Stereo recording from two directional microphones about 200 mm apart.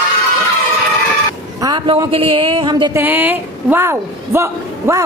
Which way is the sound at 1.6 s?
20° right (ahead or behind).